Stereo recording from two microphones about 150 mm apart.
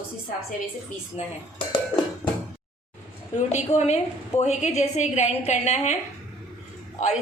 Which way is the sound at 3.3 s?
50° left (ahead or behind).